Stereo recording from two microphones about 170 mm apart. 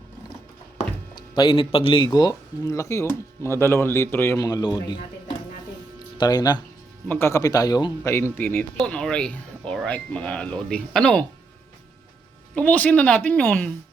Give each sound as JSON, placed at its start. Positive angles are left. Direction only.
{"t": 1.1, "sound": "speech", "side_deg": 30}
{"t": 6.1, "sound": "speech", "side_deg": 25}
{"t": 8.4, "sound": "speech", "side_deg": 10}
{"t": 12.5, "sound": "speech", "side_deg": 10}